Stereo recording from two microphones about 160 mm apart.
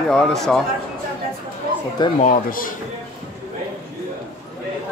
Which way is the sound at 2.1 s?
50° left (ahead or behind).